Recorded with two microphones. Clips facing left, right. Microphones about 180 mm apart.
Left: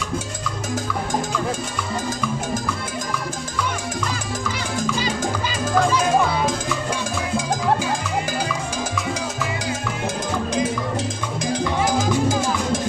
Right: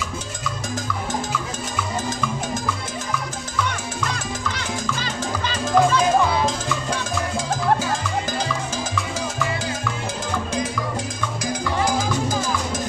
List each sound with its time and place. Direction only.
4.9 s music: 10° left (ahead or behind)